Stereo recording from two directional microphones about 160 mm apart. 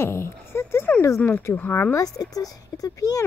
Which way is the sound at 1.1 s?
10° left (ahead or behind).